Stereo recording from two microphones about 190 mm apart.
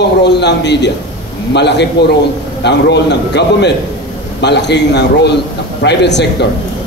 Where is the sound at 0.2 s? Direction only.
65° left (ahead or behind).